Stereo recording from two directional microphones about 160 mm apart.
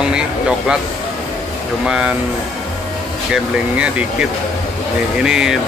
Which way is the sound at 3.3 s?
5° right (ahead or behind).